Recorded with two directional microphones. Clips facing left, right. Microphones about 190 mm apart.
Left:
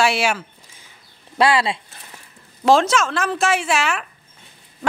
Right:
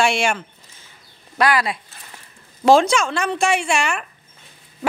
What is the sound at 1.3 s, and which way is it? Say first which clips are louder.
Speech: left 1 dB; 25° left (ahead or behind).